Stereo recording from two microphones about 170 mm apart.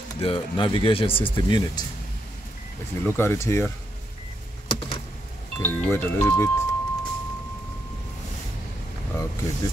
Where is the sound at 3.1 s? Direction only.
15° left (ahead or behind).